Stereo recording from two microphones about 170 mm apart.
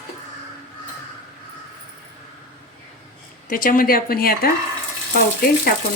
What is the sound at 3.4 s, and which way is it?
A woman's voice, 55° left (ahead or behind).